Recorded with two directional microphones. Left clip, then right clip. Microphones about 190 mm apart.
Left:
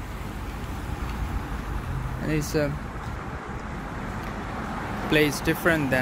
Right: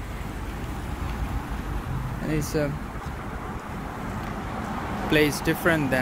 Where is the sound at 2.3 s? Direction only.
15° left (ahead or behind).